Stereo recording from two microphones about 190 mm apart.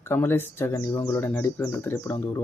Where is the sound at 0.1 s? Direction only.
10° left (ahead or behind).